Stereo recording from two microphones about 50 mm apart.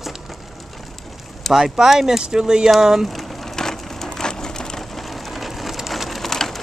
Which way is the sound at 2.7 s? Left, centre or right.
Centre.